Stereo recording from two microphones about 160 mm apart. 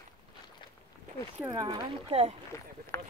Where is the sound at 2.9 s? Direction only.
15° left (ahead or behind).